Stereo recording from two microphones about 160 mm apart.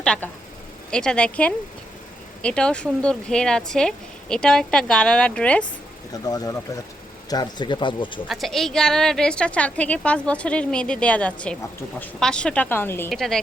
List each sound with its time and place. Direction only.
0.0 s a woman's voice: 5° left (ahead or behind)
6.2 s speech: 25° left (ahead or behind)
8.3 s a woman's voice: centre (ahead or behind)
13.1 s speech: centre (ahead or behind)